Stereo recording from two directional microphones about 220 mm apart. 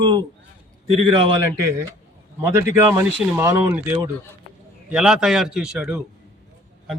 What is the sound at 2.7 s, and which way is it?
A man's voice, 10° right (ahead or behind).